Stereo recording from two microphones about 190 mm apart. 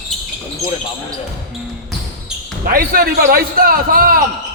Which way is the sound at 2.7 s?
50° right (ahead or behind).